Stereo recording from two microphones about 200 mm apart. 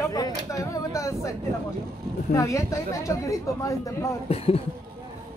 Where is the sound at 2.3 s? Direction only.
15° left (ahead or behind).